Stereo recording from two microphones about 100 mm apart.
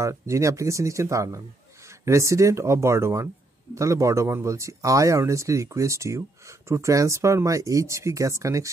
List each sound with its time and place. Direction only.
0.0 s speech: 30° right (ahead or behind)